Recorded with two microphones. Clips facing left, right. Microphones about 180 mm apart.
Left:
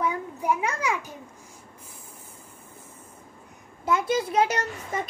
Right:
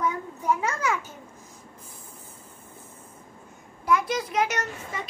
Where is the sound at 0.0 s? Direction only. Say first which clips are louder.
Left 1 dB; 10° left (ahead or behind).